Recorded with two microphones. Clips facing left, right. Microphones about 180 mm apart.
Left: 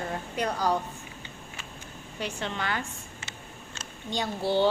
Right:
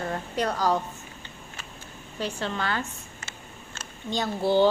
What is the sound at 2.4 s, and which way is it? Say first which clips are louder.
Speech: right 2 dB; 15° left (ahead or behind).